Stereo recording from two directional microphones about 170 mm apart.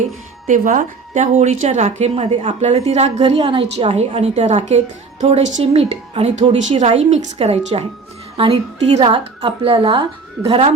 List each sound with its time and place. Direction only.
0.4 s a woman's voice: 50° right (ahead or behind)